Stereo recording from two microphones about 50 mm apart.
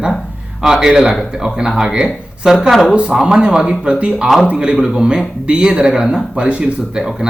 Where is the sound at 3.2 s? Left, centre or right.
Centre.